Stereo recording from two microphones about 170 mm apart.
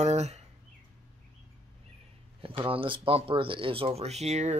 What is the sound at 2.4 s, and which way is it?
Speech, 30° right (ahead or behind).